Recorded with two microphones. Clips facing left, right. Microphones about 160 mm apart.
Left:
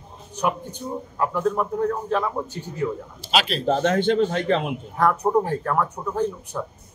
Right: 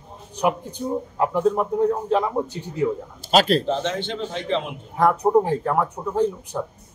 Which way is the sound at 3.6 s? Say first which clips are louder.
Left 5 dB; 50° left (ahead or behind).